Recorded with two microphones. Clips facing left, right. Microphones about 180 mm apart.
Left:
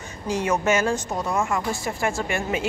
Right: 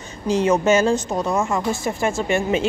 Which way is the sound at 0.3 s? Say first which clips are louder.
Right 5 dB; 25° right (ahead or behind).